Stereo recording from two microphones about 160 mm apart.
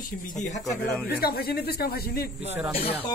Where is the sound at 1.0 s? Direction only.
75° left (ahead or behind).